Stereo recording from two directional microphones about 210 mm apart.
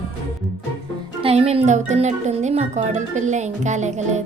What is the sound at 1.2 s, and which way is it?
A woman's voice, 30° right (ahead or behind).